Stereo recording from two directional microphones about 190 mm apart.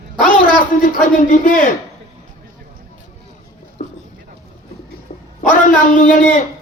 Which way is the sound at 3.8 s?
45° left (ahead or behind).